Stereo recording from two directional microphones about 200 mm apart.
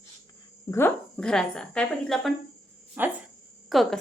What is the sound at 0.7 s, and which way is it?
A woman's voice, 10° left (ahead or behind).